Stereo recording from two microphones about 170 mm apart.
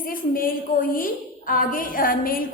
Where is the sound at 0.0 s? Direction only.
55° left (ahead or behind).